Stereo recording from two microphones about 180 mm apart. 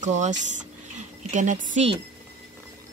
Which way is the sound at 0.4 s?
40° right (ahead or behind).